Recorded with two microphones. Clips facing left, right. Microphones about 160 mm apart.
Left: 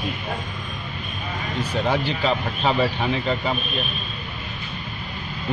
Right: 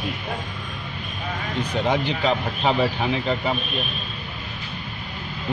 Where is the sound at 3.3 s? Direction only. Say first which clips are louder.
Even; centre (ahead or behind).